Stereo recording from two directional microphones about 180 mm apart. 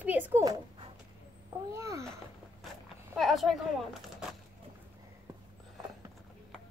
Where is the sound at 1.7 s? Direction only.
15° right (ahead or behind).